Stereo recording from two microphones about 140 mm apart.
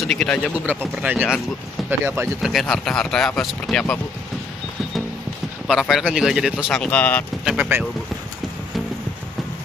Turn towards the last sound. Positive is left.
turn(degrees=-5)  # may be behind; listen again after turning